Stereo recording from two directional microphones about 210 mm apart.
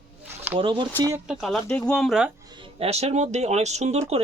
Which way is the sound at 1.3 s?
Centre (ahead or behind).